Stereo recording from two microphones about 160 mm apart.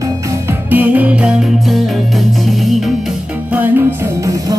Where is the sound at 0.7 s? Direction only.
10° right (ahead or behind).